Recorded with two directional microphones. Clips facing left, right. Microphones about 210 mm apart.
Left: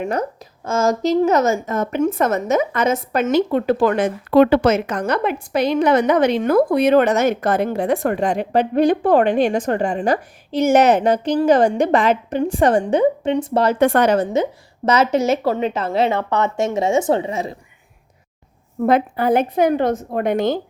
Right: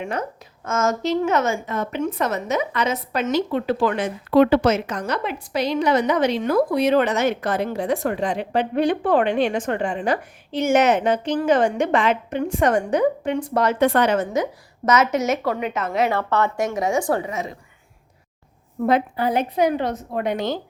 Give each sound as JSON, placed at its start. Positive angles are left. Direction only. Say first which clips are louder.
{"t": 0.0, "sound": "a woman's voice", "louder": "left 5 dB", "side_deg": 40}
{"t": 13.7, "sound": "a woman's voice", "louder": "left 3 dB", "side_deg": 50}
{"t": 14.8, "sound": "a woman's voice", "louder": "left 3 dB", "side_deg": 30}
{"t": 18.9, "sound": "a woman's voice", "louder": "left 4 dB", "side_deg": 55}